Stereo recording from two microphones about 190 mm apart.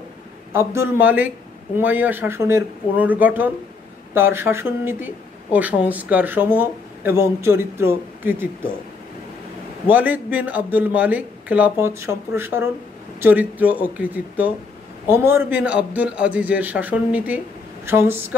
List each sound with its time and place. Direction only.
0.5 s speech: 15° right (ahead or behind)
9.8 s speech: 10° right (ahead or behind)